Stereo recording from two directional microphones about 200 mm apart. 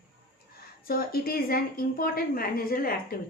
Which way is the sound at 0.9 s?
50° left (ahead or behind).